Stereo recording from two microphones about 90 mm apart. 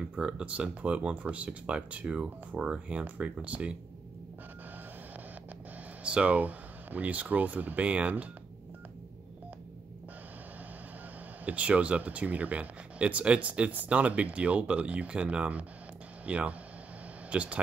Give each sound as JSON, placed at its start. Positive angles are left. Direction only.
{"t": 0.0, "sound": "speech", "side_deg": -10}
{"t": 6.0, "sound": "speech", "side_deg": -15}
{"t": 11.4, "sound": "speech", "side_deg": -15}